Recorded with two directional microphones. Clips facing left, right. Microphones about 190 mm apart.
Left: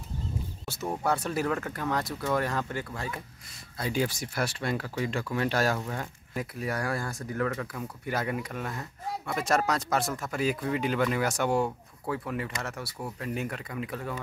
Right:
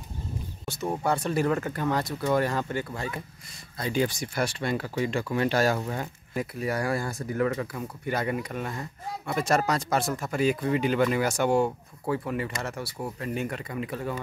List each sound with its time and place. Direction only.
1.0 s speech: 5° left (ahead or behind)